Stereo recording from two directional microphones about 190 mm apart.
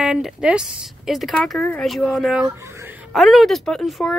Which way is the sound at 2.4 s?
15° right (ahead or behind).